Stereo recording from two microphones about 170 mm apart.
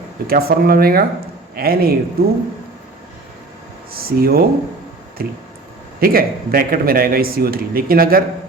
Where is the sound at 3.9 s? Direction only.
60° right (ahead or behind).